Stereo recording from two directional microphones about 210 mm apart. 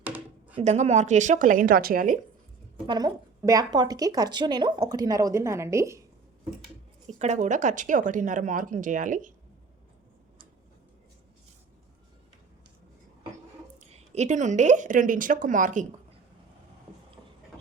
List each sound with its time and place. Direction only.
0.0 s a sound: 10° right (ahead or behind)
0.6 s speech: 30° right (ahead or behind)
2.8 s a woman's voice: 20° right (ahead or behind)
7.2 s speech: 35° right (ahead or behind)
13.7 s speech: 30° right (ahead or behind)